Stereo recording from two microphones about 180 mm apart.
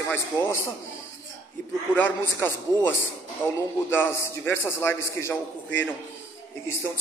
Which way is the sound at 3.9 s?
10° left (ahead or behind).